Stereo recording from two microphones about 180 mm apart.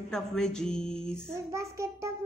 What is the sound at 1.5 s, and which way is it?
Child singing, 15° right (ahead or behind).